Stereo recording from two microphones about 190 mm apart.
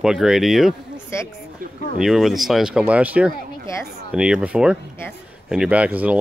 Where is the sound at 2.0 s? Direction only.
Centre (ahead or behind).